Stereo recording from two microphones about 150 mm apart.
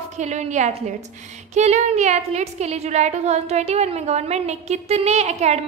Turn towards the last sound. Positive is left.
turn(degrees=-50)  # may be behind; listen again after turning